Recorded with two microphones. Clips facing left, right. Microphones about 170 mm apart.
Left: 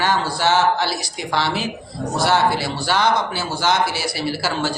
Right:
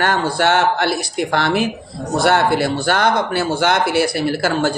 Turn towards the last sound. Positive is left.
turn(degrees=-50)  # may be behind; listen again after turning